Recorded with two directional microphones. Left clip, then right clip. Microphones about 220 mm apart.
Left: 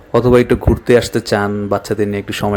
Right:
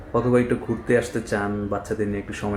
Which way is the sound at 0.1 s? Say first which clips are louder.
Left 9 dB; 40° left (ahead or behind).